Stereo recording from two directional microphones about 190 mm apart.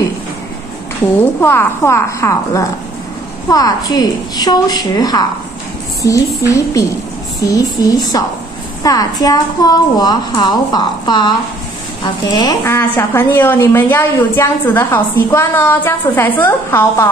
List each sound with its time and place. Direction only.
1.4 s a woman's voice: 10° left (ahead or behind)